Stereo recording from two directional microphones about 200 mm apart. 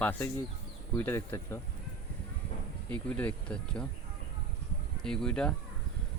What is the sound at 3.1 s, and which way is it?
Speech, 5° left (ahead or behind).